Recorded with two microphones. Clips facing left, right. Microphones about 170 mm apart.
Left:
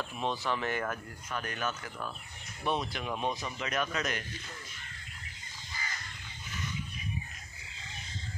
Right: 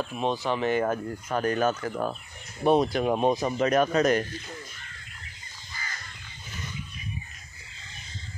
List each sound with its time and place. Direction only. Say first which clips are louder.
0.1 s speech: right 4 dB; 15° right (ahead or behind)
0.9 s speech: right 10 dB; 40° right (ahead or behind)